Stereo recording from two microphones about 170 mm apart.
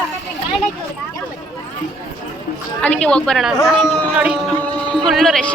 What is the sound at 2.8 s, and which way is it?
Speech, 5° left (ahead or behind).